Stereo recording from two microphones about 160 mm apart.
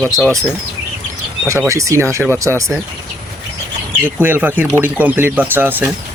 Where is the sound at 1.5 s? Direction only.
20° right (ahead or behind).